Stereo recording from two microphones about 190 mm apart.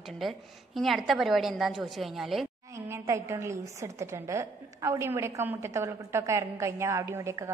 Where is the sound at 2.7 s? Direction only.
15° right (ahead or behind).